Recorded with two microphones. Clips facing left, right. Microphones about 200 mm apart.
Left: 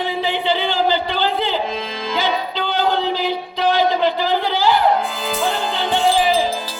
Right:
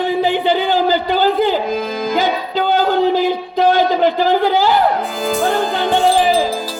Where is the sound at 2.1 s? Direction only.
45° right (ahead or behind).